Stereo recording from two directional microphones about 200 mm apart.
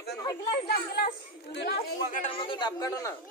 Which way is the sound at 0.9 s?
55° left (ahead or behind).